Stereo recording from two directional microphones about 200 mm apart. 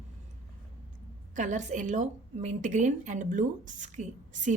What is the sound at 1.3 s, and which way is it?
A woman's voice, 40° right (ahead or behind).